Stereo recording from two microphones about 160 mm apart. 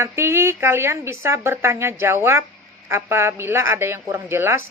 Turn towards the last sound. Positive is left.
turn(degrees=-15)  # may be behind; listen again after turning